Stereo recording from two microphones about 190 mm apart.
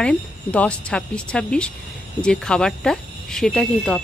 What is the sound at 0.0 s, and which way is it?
Speech, 5° left (ahead or behind).